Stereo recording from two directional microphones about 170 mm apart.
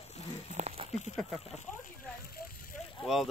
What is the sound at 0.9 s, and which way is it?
Speech, 40° left (ahead or behind).